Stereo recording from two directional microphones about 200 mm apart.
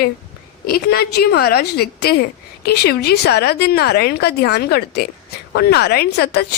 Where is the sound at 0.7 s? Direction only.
55° left (ahead or behind).